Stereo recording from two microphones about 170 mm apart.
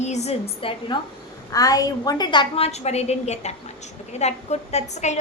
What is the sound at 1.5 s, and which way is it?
A woman's voice, 20° left (ahead or behind).